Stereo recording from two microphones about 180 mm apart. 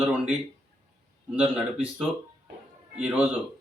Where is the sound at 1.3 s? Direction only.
10° right (ahead or behind).